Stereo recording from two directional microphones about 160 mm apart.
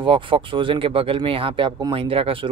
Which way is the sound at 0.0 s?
30° right (ahead or behind).